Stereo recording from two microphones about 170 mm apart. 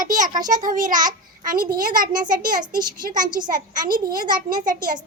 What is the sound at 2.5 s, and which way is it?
Speech, 25° right (ahead or behind).